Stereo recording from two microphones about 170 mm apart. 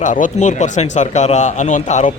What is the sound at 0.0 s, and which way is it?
Speech, 45° left (ahead or behind).